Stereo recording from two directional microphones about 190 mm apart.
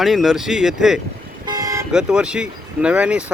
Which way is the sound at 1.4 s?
20° right (ahead or behind).